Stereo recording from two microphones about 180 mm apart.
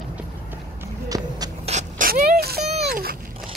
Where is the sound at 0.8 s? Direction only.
20° right (ahead or behind).